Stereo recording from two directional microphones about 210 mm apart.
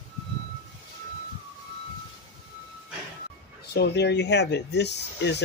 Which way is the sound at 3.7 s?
55° left (ahead or behind).